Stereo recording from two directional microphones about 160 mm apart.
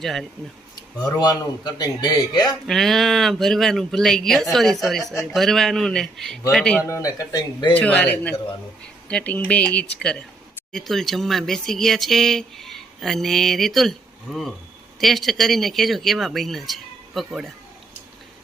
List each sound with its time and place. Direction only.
0.0 s speech: centre (ahead or behind)
0.8 s speech: 25° left (ahead or behind)
2.6 s speech: centre (ahead or behind)
6.8 s speech: 20° left (ahead or behind)
7.7 s speech: 10° left (ahead or behind)
15.0 s speech: centre (ahead or behind)